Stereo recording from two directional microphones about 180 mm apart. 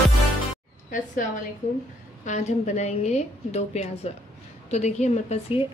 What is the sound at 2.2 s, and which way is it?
A woman's voice, 40° left (ahead or behind).